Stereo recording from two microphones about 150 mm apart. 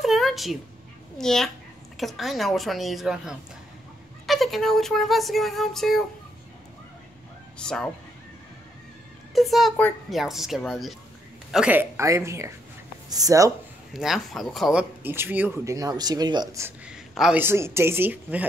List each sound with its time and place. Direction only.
0.0 s a sound: centre (ahead or behind)
1.1 s speech: 5° left (ahead or behind)
7.5 s speech: 5° left (ahead or behind)
9.3 s speech: centre (ahead or behind); by 13.5 s 20° right (ahead or behind)
13.9 s speech: centre (ahead or behind); by 16.6 s 25° right (ahead or behind)
16.6 s speech: 5° right (ahead or behind)
17.4 s speech: 15° right (ahead or behind)